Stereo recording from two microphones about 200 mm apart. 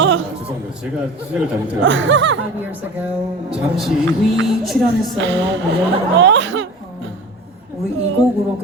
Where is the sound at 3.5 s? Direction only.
5° right (ahead or behind).